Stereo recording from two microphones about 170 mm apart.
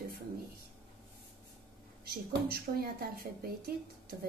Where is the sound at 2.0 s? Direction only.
65° right (ahead or behind).